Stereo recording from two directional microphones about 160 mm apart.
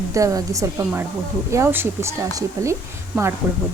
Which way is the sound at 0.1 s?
20° right (ahead or behind).